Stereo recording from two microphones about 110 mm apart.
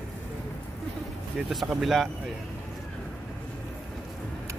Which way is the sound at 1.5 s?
Centre (ahead or behind).